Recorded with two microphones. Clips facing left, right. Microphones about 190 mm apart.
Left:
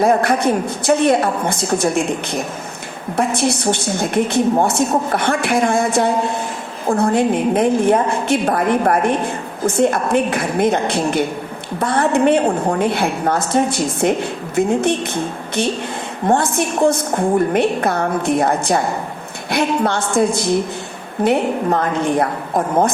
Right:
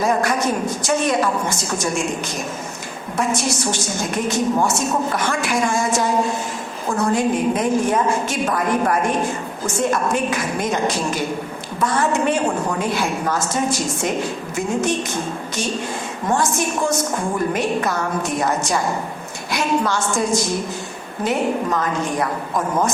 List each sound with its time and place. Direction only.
0.0 s a woman's voice: 60° left (ahead or behind)